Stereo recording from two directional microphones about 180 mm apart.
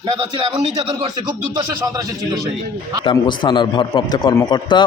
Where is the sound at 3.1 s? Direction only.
25° left (ahead or behind).